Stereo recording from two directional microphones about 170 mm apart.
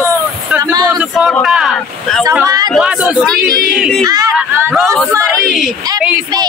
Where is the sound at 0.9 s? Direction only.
5° right (ahead or behind).